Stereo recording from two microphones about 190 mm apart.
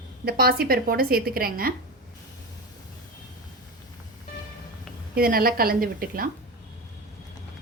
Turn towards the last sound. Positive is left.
turn(degrees=-50)  # may be behind; listen again after turning